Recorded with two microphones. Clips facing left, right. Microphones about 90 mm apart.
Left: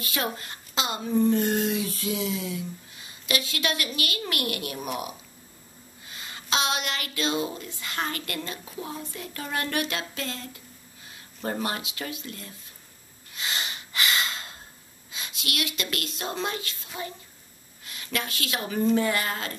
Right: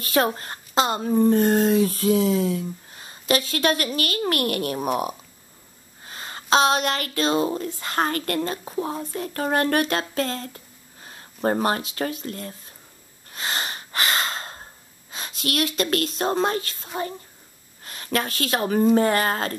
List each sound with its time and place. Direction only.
0.0 s speech: 40° right (ahead or behind)
13.3 s snort: 45° right (ahead or behind)
17.8 s speech: 45° right (ahead or behind)